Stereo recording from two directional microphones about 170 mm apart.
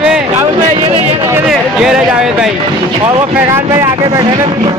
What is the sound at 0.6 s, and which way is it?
Speech, 35° right (ahead or behind).